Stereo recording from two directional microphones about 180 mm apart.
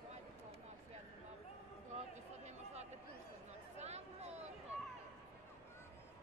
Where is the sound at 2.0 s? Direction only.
35° right (ahead or behind).